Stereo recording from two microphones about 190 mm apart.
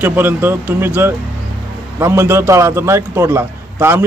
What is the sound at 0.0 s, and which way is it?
A man's voice, 10° right (ahead or behind).